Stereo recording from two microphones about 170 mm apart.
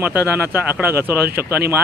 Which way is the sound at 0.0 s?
10° right (ahead or behind).